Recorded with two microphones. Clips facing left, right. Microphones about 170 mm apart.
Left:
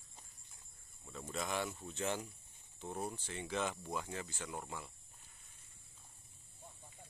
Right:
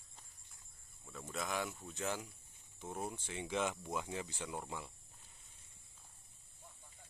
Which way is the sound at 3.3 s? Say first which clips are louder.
Right 2 dB; 15° right (ahead or behind).